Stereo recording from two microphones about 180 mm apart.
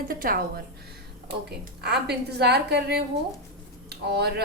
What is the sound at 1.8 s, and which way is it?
A woman's voice, 65° right (ahead or behind).